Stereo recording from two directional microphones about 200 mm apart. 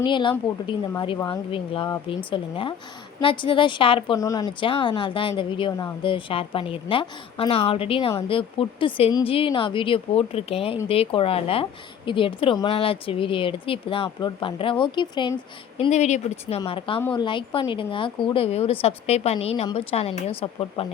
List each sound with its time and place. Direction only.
0.0 s a woman's voice: 25° left (ahead or behind)
15.8 s a woman's voice: 35° left (ahead or behind)